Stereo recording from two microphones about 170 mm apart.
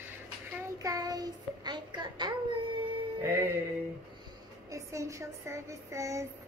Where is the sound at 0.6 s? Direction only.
20° right (ahead or behind).